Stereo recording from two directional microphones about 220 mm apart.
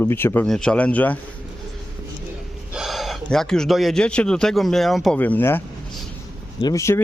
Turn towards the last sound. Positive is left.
turn(degrees=15)  # may be behind; listen again after turning